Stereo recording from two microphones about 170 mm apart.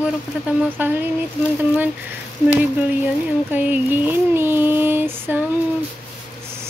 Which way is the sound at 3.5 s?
10° right (ahead or behind).